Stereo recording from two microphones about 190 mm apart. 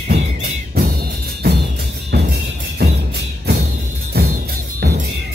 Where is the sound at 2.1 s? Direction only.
60° right (ahead or behind).